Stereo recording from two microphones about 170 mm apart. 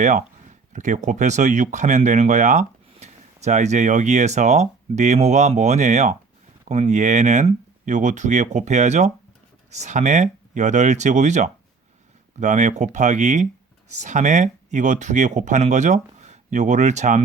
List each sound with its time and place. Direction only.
0.0 s speech: 45° right (ahead or behind)